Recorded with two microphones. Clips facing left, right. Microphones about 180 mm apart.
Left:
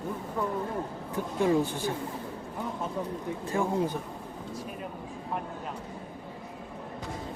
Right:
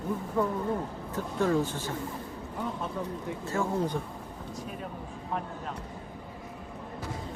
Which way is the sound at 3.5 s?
15° left (ahead or behind).